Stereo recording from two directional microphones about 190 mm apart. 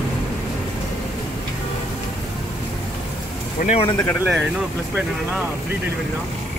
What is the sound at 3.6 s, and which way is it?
Speech, 40° left (ahead or behind).